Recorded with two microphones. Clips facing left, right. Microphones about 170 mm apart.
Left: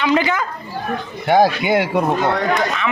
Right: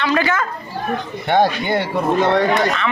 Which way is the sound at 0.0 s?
15° left (ahead or behind).